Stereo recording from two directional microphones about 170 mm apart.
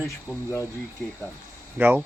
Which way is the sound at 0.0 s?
15° left (ahead or behind).